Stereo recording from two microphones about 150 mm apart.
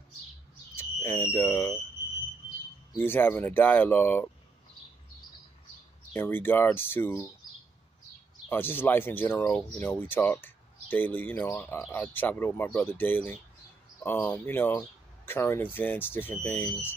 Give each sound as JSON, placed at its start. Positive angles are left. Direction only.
{"t": 0.7, "sound": "speech", "side_deg": 15}
{"t": 3.0, "sound": "speech", "side_deg": 15}
{"t": 6.1, "sound": "speech", "side_deg": 15}
{"t": 8.5, "sound": "speech", "side_deg": 15}